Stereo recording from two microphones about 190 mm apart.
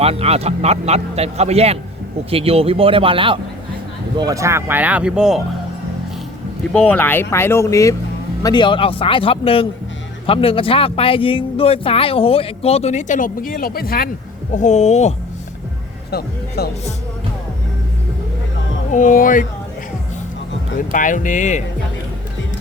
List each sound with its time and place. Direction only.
0.0 s speech: 30° right (ahead or behind)
4.2 s speech: 15° right (ahead or behind)
6.7 s speech: 10° left (ahead or behind); by 14.1 s 50° left (ahead or behind)
14.5 s speech: 40° left (ahead or behind)
16.6 s speech: 55° left (ahead or behind)
18.9 s speech: 40° left (ahead or behind)
20.9 s speech: 45° left (ahead or behind)